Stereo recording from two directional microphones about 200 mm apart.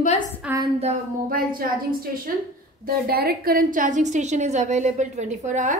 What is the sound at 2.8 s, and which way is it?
A woman's voice, 50° right (ahead or behind).